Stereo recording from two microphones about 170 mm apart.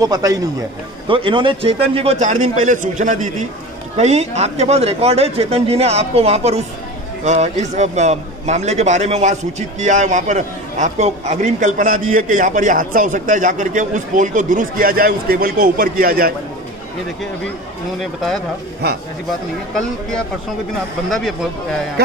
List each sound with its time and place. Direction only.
0.0 s a man's voice: 20° right (ahead or behind); by 16.3 s 60° right (ahead or behind)
21.1 s speech: centre (ahead or behind)